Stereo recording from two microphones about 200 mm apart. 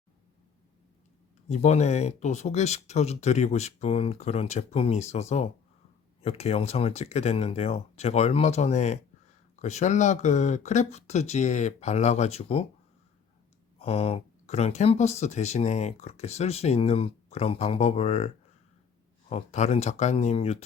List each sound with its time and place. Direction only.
1.5 s speech: 35° left (ahead or behind)
13.7 s speech: 30° left (ahead or behind)
19.3 s speech: 35° left (ahead or behind)